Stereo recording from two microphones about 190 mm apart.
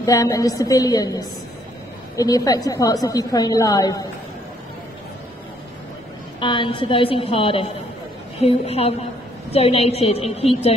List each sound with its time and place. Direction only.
0.0 s a woman's voice: 20° left (ahead or behind)
6.4 s a woman's voice: 25° left (ahead or behind)